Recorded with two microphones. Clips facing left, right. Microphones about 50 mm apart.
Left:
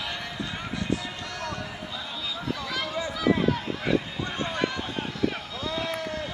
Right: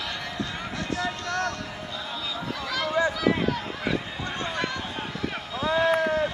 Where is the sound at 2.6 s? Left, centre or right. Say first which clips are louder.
Right 2 dB; centre.